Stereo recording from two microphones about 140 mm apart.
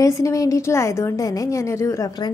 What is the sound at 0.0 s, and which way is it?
A woman's voice, 25° left (ahead or behind).